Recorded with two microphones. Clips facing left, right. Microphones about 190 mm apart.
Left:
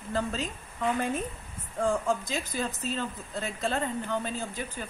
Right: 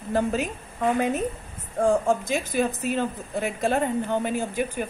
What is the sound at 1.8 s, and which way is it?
Speech, 15° right (ahead or behind).